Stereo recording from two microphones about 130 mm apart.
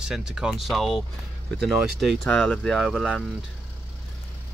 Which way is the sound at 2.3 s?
10° left (ahead or behind).